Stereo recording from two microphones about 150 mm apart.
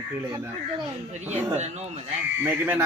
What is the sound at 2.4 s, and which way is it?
Speech, 15° right (ahead or behind).